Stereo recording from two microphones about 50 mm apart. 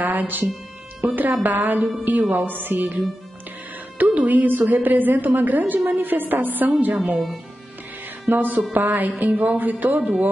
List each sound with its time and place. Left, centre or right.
0.0 s music: right
1.0 s a woman's voice: right
4.0 s a woman's voice: right
8.3 s a woman's voice: right